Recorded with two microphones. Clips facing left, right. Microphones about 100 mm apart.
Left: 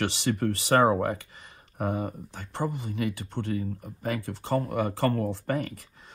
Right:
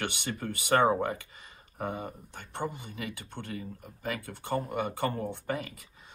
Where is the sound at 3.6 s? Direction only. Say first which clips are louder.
Left 8 dB; 45° left (ahead or behind).